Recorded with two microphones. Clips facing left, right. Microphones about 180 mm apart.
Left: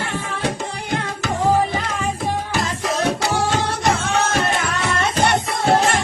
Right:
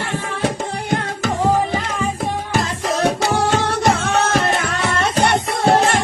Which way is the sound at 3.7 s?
60° right (ahead or behind).